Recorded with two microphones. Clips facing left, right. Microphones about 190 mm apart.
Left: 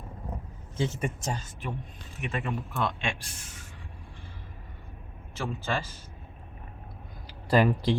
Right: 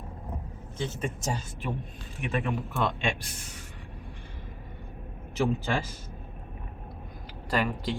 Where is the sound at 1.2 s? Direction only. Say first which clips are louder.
Right 2 dB; centre (ahead or behind).